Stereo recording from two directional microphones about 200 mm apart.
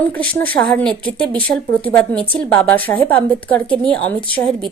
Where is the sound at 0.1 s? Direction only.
10° left (ahead or behind).